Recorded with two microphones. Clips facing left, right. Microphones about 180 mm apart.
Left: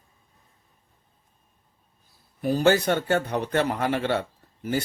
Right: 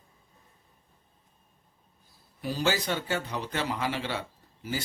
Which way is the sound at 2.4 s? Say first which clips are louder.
Left 8 dB; 50° left (ahead or behind).